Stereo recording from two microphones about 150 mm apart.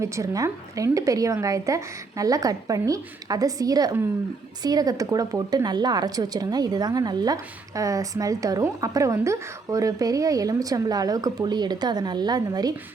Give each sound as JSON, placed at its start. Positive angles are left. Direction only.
{"t": 0.0, "sound": "a woman's voice", "side_deg": -20}